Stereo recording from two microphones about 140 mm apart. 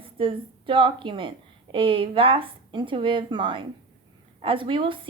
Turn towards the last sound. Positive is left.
turn(degrees=-40)  # may be behind; listen again after turning